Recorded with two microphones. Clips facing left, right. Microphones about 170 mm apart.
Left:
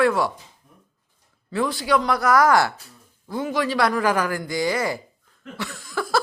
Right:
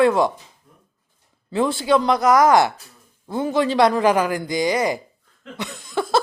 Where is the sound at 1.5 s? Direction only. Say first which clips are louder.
Right 3 dB; 25° right (ahead or behind).